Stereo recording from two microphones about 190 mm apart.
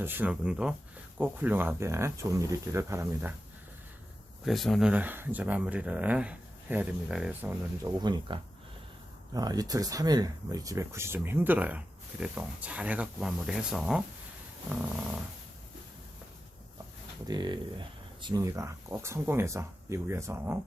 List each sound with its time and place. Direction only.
0.0 s speech: 10° right (ahead or behind)
4.4 s speech: centre (ahead or behind)
7.9 s speech: 20° right (ahead or behind); by 14.0 s 5° right (ahead or behind)
17.2 s speech: 20° right (ahead or behind)